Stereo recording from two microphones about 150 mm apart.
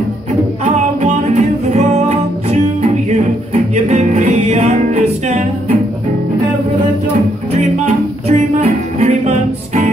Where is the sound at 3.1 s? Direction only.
45° right (ahead or behind).